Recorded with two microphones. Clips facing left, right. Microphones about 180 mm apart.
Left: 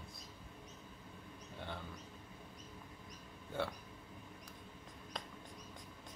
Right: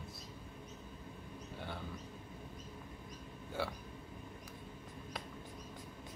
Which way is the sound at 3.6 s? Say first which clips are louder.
Even; 5° right (ahead or behind).